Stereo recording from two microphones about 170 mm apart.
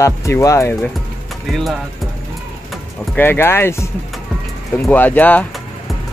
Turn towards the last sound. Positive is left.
turn(degrees=10)  # may be behind; listen again after turning